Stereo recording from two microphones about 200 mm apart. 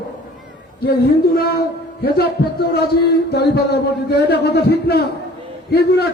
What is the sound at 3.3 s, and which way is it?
Speech, 55° left (ahead or behind).